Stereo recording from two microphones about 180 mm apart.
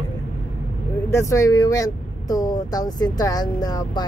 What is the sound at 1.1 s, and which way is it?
Speech, 15° left (ahead or behind).